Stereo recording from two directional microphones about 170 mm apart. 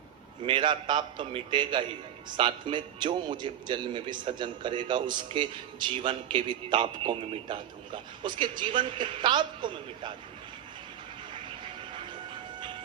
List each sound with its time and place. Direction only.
0.4 s a man's voice: 30° right (ahead or behind)
11.4 s vehicle: 30° right (ahead or behind)